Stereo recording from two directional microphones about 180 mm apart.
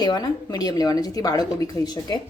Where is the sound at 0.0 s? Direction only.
20° left (ahead or behind).